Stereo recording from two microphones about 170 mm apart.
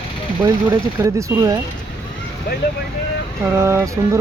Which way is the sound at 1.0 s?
15° right (ahead or behind).